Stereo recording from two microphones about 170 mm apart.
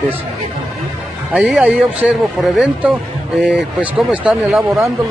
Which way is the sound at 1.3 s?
5° right (ahead or behind).